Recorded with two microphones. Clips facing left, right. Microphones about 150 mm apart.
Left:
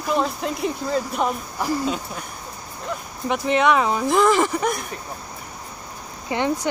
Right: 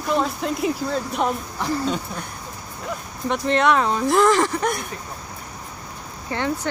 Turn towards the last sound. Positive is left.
turn(degrees=15)  # may be behind; listen again after turning